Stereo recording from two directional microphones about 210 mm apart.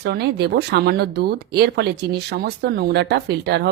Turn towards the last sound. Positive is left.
turn(degrees=-50)  # may be behind; listen again after turning